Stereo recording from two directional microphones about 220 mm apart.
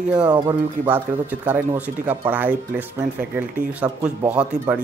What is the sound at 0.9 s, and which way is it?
Speech, 10° right (ahead or behind).